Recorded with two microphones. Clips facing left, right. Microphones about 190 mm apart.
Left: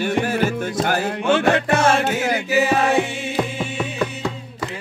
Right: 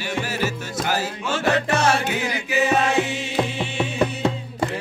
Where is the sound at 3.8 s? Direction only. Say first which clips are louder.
Right 4 dB; 25° right (ahead or behind).